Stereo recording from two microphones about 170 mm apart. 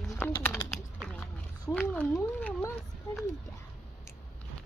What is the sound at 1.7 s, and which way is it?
Speech, 10° left (ahead or behind).